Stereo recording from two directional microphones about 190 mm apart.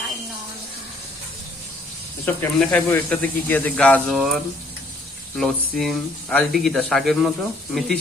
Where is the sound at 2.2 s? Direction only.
5° left (ahead or behind).